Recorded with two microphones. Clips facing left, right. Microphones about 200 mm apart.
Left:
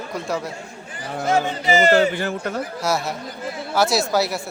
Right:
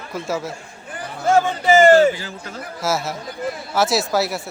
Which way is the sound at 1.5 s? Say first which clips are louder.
Right 5 dB; 50° right (ahead or behind).